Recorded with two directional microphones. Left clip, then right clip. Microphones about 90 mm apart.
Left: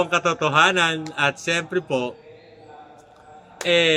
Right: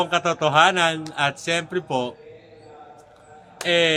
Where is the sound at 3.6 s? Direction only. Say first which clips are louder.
Left 1 dB; 50° right (ahead or behind).